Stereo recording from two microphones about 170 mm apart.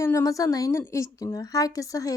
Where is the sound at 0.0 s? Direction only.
15° left (ahead or behind).